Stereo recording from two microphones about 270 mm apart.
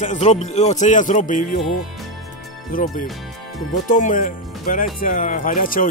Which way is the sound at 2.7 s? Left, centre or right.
Left.